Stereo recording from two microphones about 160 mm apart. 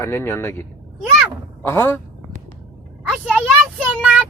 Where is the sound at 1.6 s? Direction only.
15° left (ahead or behind).